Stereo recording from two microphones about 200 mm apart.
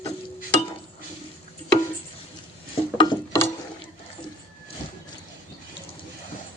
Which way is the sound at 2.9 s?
20° left (ahead or behind).